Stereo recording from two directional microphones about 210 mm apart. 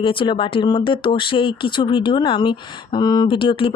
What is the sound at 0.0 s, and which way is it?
Speech, 25° left (ahead or behind).